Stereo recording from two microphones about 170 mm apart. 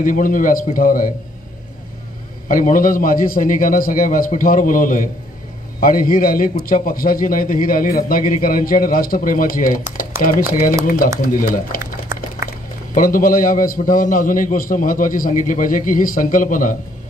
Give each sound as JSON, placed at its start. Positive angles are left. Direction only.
{"t": 0.0, "sound": "a man's voice", "side_deg": 50}
{"t": 2.4, "sound": "a man's voice", "side_deg": 50}
{"t": 12.4, "sound": "boiling", "side_deg": -15}
{"t": 12.9, "sound": "a man's voice", "side_deg": 55}